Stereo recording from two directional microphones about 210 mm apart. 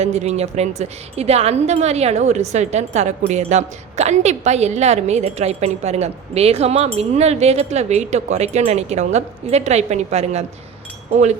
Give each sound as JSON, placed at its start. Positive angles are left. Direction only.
{"t": 0.0, "sound": "a woman's voice", "side_deg": -30}